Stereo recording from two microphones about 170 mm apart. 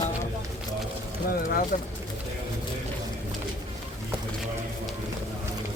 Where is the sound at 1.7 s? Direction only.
50° left (ahead or behind).